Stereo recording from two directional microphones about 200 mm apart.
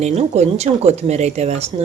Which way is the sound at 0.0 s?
35° right (ahead or behind).